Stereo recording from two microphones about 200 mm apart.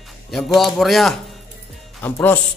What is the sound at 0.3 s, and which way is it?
A man's voice, centre (ahead or behind).